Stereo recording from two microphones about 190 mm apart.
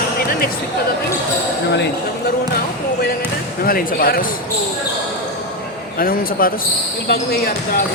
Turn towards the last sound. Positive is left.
turn(degrees=55)  # may be behind; listen again after turning